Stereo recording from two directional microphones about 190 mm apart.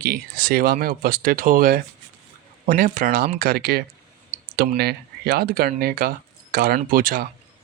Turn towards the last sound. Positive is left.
turn(degrees=-50)  # may be behind; listen again after turning